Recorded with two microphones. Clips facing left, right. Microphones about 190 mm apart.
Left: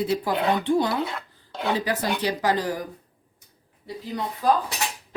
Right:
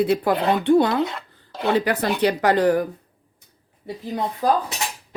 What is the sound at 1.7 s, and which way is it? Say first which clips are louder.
Speech: right 5 dB; 60° right (ahead or behind).